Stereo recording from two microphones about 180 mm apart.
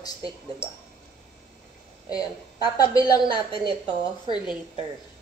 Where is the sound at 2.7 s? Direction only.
20° left (ahead or behind).